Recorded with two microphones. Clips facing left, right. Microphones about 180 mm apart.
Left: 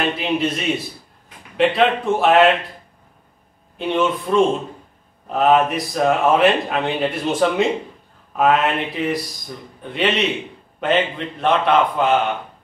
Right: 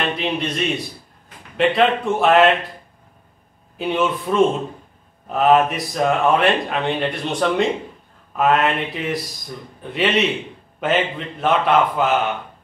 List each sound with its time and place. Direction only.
0.2 s a man's voice: centre (ahead or behind)
3.7 s a man's voice: 5° right (ahead or behind)